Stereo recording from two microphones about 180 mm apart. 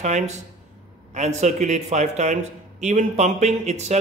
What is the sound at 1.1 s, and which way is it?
A man's voice, 40° right (ahead or behind).